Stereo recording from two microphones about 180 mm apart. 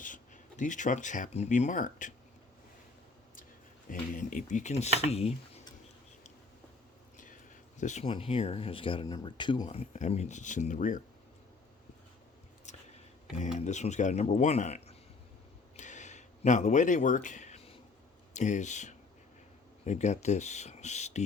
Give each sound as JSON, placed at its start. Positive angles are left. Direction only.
{"t": 0.0, "sound": "speech", "side_deg": 45}
{"t": 3.8, "sound": "speech", "side_deg": 45}
{"t": 7.8, "sound": "speech", "side_deg": 40}
{"t": 13.6, "sound": "speech", "side_deg": 40}
{"t": 15.7, "sound": "a sound", "side_deg": 40}
{"t": 18.3, "sound": "speech", "side_deg": 40}